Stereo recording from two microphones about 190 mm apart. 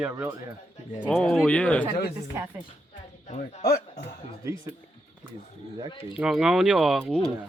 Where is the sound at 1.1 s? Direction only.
5° left (ahead or behind).